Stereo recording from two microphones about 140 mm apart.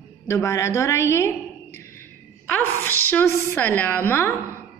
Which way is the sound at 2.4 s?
15° left (ahead or behind).